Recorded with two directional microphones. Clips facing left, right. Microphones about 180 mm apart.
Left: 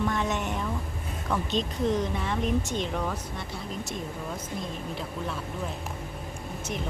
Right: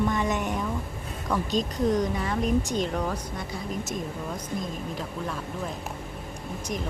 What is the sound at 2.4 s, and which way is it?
Speech, 40° right (ahead or behind).